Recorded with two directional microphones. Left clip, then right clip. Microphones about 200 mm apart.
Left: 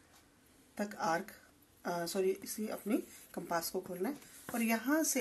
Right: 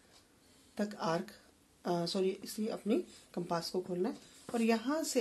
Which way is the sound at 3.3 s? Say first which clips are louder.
Right 1 dB; 35° right (ahead or behind).